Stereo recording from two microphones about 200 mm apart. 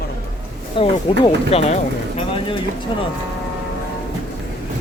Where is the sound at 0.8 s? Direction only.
30° left (ahead or behind).